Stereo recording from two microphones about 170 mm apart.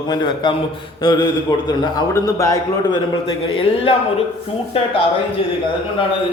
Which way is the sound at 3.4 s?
35° left (ahead or behind).